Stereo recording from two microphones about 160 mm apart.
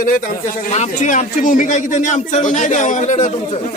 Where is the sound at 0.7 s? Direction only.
50° left (ahead or behind).